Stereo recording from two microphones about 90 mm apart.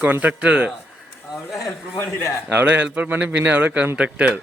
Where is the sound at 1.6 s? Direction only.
30° left (ahead or behind).